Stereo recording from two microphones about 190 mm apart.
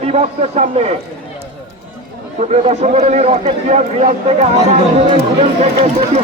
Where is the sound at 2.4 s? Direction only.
35° right (ahead or behind).